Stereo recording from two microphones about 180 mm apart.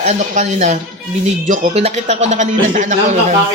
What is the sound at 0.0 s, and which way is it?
Speech, 40° right (ahead or behind).